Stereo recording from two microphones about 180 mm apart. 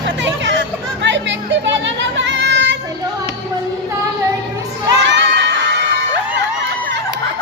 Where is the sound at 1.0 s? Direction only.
85° right.